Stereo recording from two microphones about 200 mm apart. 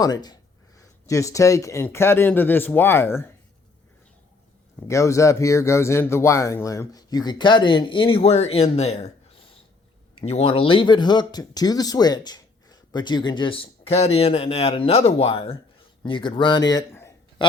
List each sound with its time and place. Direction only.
0.0 s speech: 20° left (ahead or behind)
4.9 s speech: 15° left (ahead or behind); by 9.1 s 30° left (ahead or behind)
10.2 s a man's voice: 30° left (ahead or behind); by 17.4 s 15° left (ahead or behind)